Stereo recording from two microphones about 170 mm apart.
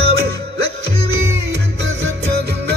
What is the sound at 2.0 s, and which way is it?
Music, 80° right.